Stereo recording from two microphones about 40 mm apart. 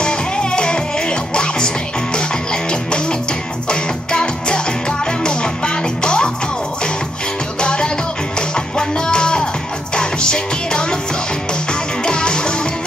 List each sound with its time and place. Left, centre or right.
0.0 s music: left
7.6 s music: left
12.0 s music: left